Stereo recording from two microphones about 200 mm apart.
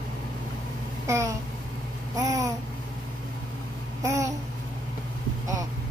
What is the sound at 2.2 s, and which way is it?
Babbling, 15° right (ahead or behind).